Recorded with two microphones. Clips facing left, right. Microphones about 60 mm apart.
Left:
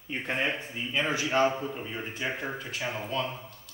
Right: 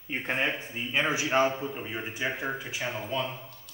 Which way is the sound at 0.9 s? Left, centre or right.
Centre.